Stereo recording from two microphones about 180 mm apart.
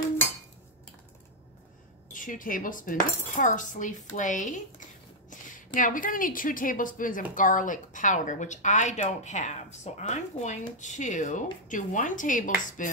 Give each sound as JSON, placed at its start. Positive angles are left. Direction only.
{"t": 2.1, "sound": "speech", "side_deg": 50}
{"t": 5.3, "sound": "a sound", "side_deg": 45}
{"t": 5.8, "sound": "speech", "side_deg": 50}